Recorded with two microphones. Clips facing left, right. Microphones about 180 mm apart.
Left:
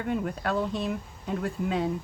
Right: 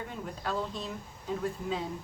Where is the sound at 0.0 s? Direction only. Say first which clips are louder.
Left 8 dB; 65° left (ahead or behind).